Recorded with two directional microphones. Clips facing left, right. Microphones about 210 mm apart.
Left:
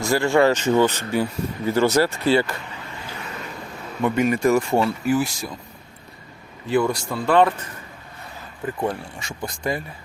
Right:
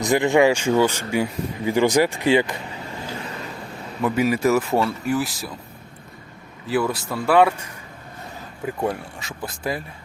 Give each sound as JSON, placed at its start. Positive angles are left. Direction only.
{"t": 0.0, "sound": "speech", "side_deg": -20}
{"t": 3.2, "sound": "vehicle", "side_deg": -30}
{"t": 4.0, "sound": "speech", "side_deg": -5}
{"t": 6.7, "sound": "speech", "side_deg": -5}